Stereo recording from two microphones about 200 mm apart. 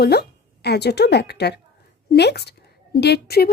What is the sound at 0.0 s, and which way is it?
A woman's voice, 55° left (ahead or behind).